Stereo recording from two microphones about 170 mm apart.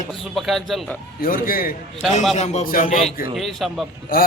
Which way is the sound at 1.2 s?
55° left (ahead or behind).